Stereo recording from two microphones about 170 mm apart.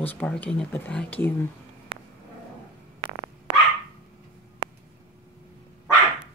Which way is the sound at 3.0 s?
25° right (ahead or behind).